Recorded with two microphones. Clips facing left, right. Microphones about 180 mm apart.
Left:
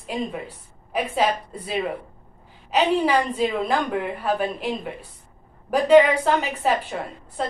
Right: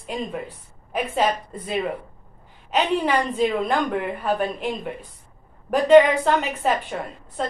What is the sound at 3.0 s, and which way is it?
A woman's voice, 5° left (ahead or behind).